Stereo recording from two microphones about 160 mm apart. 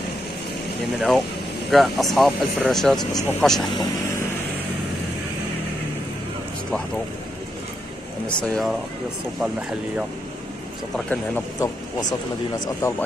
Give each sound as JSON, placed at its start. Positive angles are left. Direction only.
{"t": 0.9, "sound": "speech", "side_deg": 0}
{"t": 8.3, "sound": "speech", "side_deg": 5}
{"t": 9.4, "sound": "speech", "side_deg": -5}
{"t": 11.1, "sound": "speech", "side_deg": 10}
{"t": 12.0, "sound": "speech", "side_deg": 25}